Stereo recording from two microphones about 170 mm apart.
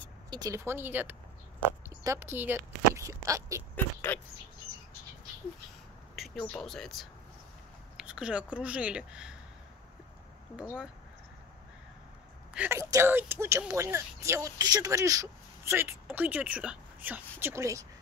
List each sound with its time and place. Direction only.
0.3 s speech: 20° right (ahead or behind)
3.7 s speech: 10° left (ahead or behind)
6.1 s a sound: centre (ahead or behind)
6.5 s speech: 5° left (ahead or behind)
12.5 s speech: 15° right (ahead or behind)